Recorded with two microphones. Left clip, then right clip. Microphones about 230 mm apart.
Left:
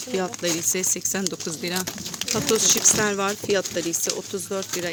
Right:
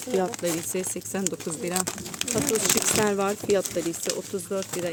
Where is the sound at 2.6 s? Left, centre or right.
Right.